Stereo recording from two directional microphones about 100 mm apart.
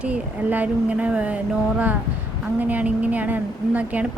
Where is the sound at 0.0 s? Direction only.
15° right (ahead or behind).